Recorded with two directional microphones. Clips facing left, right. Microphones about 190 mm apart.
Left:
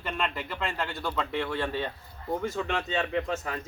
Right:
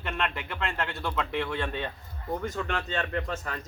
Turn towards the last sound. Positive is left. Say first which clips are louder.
# left 2 dB
turn(degrees=5)  # may be behind; listen again after turning